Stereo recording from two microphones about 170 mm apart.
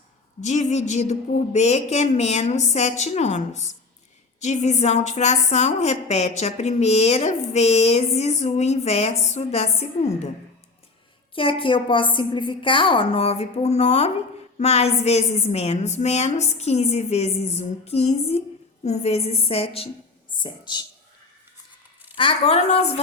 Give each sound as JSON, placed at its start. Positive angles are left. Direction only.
{"t": 0.4, "sound": "a woman's voice", "side_deg": 45}
{"t": 11.3, "sound": "a woman's voice", "side_deg": 30}
{"t": 22.2, "sound": "a woman's voice", "side_deg": 35}